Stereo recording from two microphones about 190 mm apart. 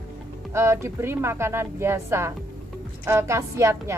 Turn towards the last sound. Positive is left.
turn(degrees=-15)  # may be behind; listen again after turning